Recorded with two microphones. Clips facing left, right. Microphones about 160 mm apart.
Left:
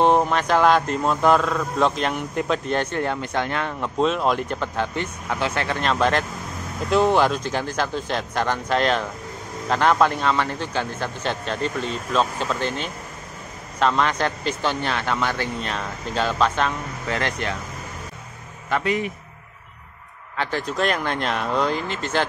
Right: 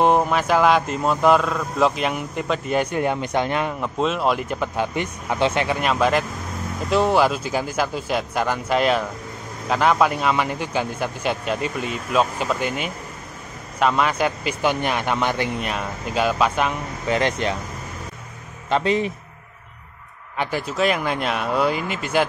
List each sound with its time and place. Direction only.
0.0 s speech: 5° right (ahead or behind)
3.8 s speech: centre (ahead or behind); by 17.6 s 20° right (ahead or behind)
18.7 s a man's voice: 25° right (ahead or behind)
20.3 s speech: 5° right (ahead or behind)